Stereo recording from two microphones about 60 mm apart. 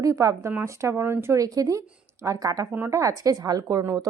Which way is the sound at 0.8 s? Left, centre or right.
Right.